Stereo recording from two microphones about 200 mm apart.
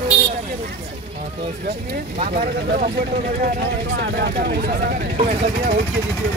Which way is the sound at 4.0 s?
50° right (ahead or behind).